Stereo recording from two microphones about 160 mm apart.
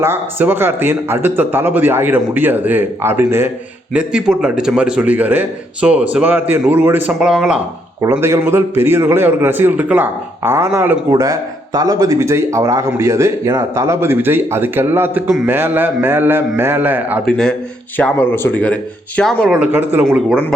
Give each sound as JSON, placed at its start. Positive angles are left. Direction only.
{"t": 0.0, "sound": "a man's voice", "side_deg": -15}
{"t": 17.2, "sound": "speech", "side_deg": 5}
{"t": 19.7, "sound": "a man's voice", "side_deg": -10}